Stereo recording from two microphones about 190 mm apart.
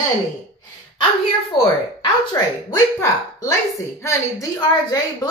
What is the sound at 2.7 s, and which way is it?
A woman's voice, 20° left (ahead or behind).